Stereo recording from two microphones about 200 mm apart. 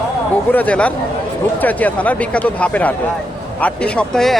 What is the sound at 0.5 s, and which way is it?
Speech, 5° left (ahead or behind).